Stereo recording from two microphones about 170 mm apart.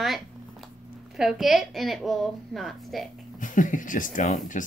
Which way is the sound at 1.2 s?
Centre (ahead or behind).